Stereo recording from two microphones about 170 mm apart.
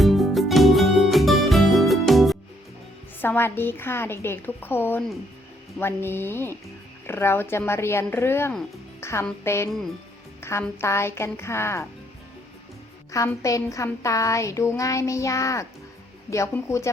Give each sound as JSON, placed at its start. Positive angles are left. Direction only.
{"t": 0.0, "sound": "music", "side_deg": 0}
{"t": 3.2, "sound": "speech", "side_deg": 10}
{"t": 13.1, "sound": "speech", "side_deg": 20}